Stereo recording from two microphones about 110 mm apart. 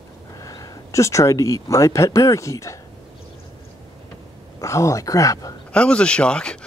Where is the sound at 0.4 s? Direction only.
35° left (ahead or behind).